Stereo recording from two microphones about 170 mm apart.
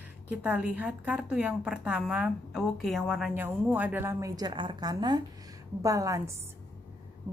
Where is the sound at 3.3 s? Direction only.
10° right (ahead or behind).